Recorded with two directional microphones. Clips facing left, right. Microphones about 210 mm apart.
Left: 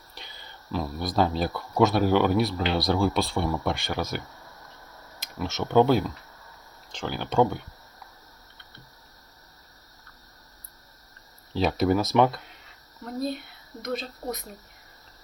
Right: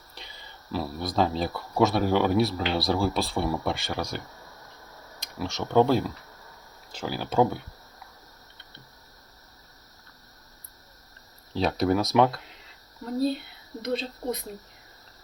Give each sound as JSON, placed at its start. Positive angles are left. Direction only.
{"t": 0.2, "sound": "a sound", "side_deg": 0}
{"t": 0.7, "sound": "speech", "side_deg": 0}
{"t": 5.2, "sound": "speech", "side_deg": 0}
{"t": 11.5, "sound": "speech", "side_deg": 0}
{"t": 13.8, "sound": "speech", "side_deg": -30}